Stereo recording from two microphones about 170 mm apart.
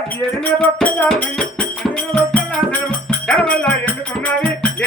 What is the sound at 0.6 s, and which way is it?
Music, 10° left (ahead or behind).